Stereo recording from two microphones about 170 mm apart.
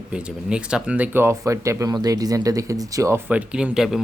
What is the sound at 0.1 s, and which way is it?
Speech, 5° right (ahead or behind).